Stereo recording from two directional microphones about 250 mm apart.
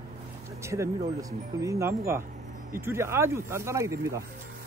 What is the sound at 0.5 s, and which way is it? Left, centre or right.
Speech, centre.